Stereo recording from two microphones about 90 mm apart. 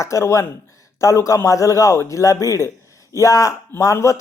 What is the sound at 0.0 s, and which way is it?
A man's voice, 35° left (ahead or behind).